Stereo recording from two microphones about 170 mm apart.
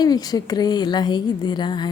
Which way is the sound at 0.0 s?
25° left (ahead or behind).